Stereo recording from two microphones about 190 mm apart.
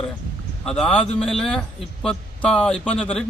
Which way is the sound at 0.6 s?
5° left (ahead or behind).